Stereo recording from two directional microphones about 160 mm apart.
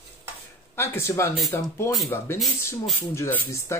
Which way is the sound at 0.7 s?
15° left (ahead or behind).